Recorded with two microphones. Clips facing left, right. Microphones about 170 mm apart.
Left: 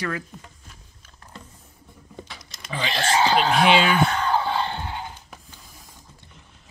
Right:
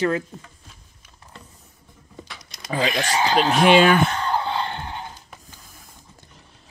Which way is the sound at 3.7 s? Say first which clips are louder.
Right 5 dB; 50° right (ahead or behind).